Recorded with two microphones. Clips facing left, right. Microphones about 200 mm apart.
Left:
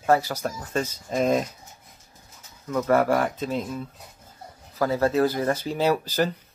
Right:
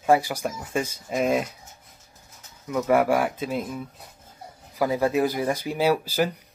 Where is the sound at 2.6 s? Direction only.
10° right (ahead or behind).